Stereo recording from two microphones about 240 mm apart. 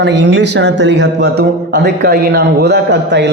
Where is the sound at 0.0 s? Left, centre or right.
Right.